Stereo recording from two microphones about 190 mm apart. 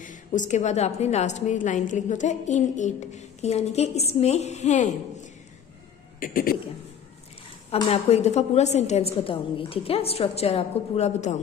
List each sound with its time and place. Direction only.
0.0 s a woman's voice: 40° left (ahead or behind)
7.7 s a woman's voice: 35° left (ahead or behind)